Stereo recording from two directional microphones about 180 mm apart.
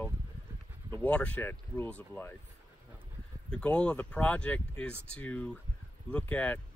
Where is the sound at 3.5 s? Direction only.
5° left (ahead or behind).